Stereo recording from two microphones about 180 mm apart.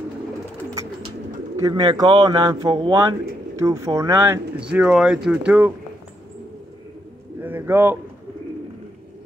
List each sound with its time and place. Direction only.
1.6 s speech: 20° right (ahead or behind)
4.6 s speech: 5° right (ahead or behind)
7.4 s speech: 10° right (ahead or behind)